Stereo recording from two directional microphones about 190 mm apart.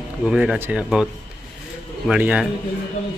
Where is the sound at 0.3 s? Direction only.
5° right (ahead or behind).